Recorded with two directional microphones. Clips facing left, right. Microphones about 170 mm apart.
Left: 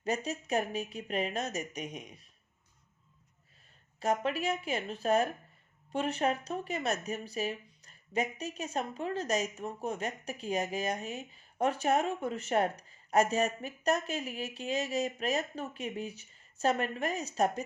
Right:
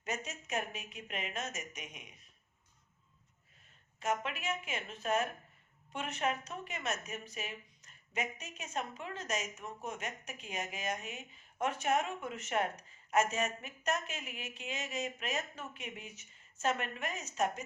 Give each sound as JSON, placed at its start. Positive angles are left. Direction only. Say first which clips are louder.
{"t": 0.0, "sound": "speech", "louder": "left 7 dB", "side_deg": 35}
{"t": 4.0, "sound": "speech", "louder": "left 6 dB", "side_deg": 35}